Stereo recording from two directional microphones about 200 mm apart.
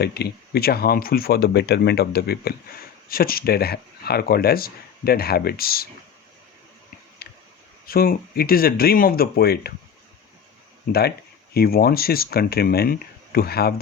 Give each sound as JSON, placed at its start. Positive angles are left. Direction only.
{"t": 0.0, "sound": "speech", "side_deg": 55}
{"t": 7.2, "sound": "a sound", "side_deg": 50}
{"t": 7.9, "sound": "speech", "side_deg": 50}
{"t": 11.5, "sound": "speech", "side_deg": 50}